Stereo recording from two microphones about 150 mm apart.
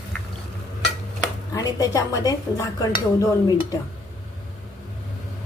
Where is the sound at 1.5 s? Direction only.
25° left (ahead or behind).